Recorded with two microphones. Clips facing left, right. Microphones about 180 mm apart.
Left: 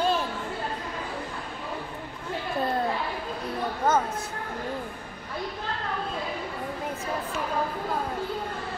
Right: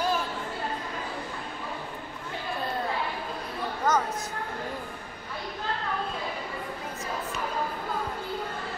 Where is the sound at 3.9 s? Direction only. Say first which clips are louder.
Left 2 dB; 30° left (ahead or behind).